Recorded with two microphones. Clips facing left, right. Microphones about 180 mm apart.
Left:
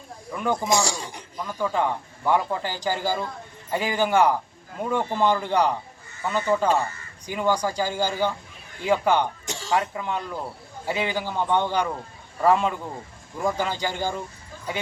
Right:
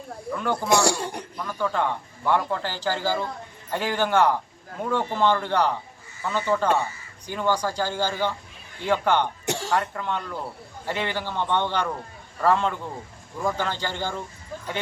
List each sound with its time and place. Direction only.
0.3 s speech: 15° left (ahead or behind)
0.7 s speech: 60° right (ahead or behind)
1.5 s speech: 10° left (ahead or behind)
9.5 s cough: 65° right (ahead or behind)
9.7 s speech: 10° left (ahead or behind)